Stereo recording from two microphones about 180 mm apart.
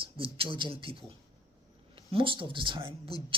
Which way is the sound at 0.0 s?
30° right (ahead or behind).